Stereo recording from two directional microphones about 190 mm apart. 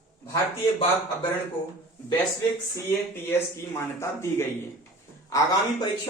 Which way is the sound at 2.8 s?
15° left (ahead or behind).